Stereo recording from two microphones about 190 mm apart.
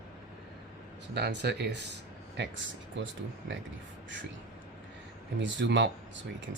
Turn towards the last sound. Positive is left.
turn(degrees=-65)  # may be behind; listen again after turning